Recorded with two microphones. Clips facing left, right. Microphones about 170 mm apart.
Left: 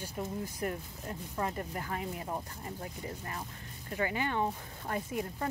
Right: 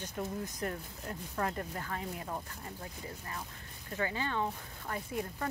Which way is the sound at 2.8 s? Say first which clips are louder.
Left 4 dB; 25° left (ahead or behind).